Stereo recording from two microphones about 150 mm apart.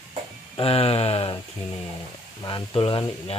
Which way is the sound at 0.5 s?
40° left (ahead or behind).